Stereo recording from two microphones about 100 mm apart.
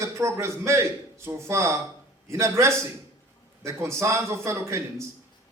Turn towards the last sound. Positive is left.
turn(degrees=-30)  # may be behind; listen again after turning